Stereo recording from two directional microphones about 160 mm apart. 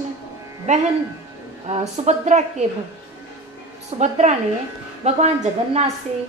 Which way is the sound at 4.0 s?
45° right (ahead or behind).